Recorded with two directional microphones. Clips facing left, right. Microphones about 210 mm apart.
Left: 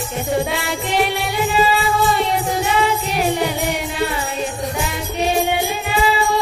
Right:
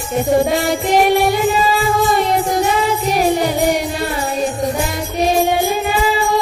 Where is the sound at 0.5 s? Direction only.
45° right (ahead or behind).